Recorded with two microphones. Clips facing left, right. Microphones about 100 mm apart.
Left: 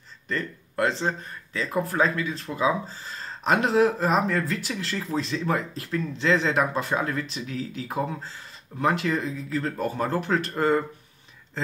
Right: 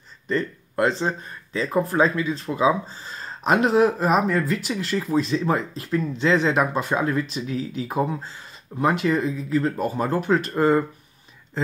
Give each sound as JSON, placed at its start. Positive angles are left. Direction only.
{"t": 0.3, "sound": "speech", "side_deg": -20}